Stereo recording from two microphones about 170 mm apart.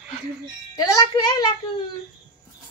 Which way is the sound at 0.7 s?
20° left (ahead or behind).